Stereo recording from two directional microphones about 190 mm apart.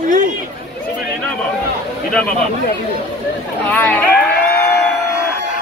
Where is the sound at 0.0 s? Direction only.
45° right (ahead or behind).